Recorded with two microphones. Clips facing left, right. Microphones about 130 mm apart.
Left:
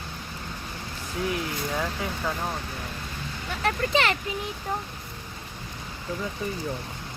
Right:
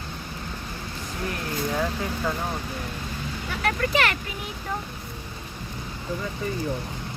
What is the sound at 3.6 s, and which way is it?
Speech, 25° left (ahead or behind).